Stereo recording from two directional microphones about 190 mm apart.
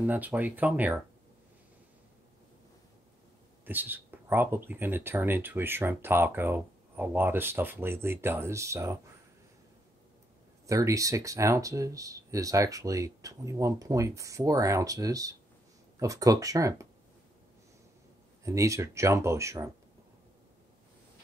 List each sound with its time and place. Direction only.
0.0 s speech: 10° right (ahead or behind)
3.6 s speech: 10° right (ahead or behind)
10.7 s speech: 15° right (ahead or behind)
18.4 s speech: 15° right (ahead or behind)